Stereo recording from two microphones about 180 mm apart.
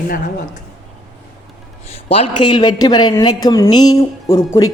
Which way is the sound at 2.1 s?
25° left (ahead or behind).